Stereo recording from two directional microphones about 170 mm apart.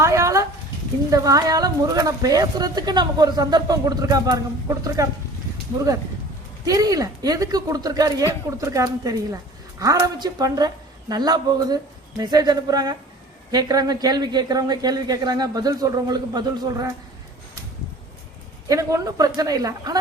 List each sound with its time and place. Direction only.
0.0 s a sound: 15° right (ahead or behind)
1.1 s a woman's voice: 20° right (ahead or behind)
6.7 s a woman's voice: 20° right (ahead or behind)
18.7 s a woman's voice: 20° right (ahead or behind)